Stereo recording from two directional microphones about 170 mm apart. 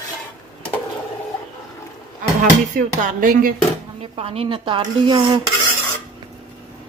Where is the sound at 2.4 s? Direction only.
50° right (ahead or behind).